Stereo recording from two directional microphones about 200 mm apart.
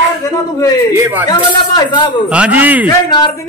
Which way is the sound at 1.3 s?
20° left (ahead or behind).